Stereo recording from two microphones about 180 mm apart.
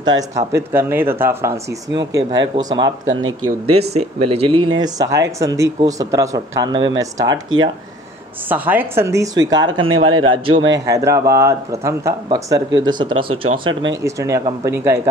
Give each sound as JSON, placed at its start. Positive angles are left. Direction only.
{"t": 0.0, "sound": "a woman's voice", "side_deg": -20}
{"t": 8.5, "sound": "a woman's voice", "side_deg": -10}
{"t": 10.7, "sound": "a woman's voice", "side_deg": -15}
{"t": 14.0, "sound": "speech", "side_deg": -15}